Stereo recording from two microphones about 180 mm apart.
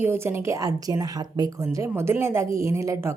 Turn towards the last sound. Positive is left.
turn(degrees=-15)  # may be behind; listen again after turning